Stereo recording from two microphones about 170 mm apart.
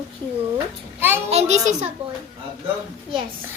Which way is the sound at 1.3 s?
40° right (ahead or behind).